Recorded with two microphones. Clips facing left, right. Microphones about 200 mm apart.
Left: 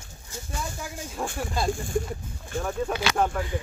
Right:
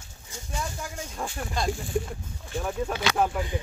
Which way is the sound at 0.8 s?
5° left (ahead or behind).